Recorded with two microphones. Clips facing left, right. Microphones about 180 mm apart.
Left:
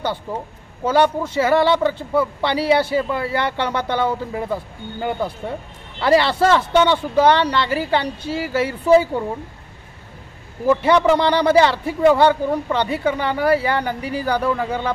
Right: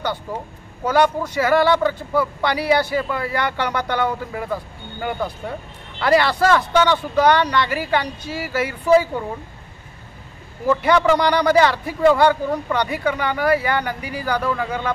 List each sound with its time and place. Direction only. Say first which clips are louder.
0.8 s a man's voice: left 1 dB; 30° left (ahead or behind)
10.8 s a man's voice: even; 25° left (ahead or behind)